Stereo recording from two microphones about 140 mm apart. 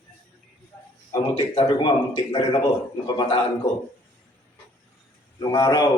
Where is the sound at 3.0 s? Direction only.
30° left (ahead or behind).